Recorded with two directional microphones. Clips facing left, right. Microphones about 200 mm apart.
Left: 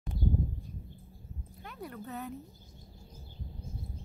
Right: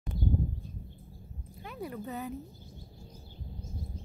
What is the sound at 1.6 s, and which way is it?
Speech, centre (ahead or behind).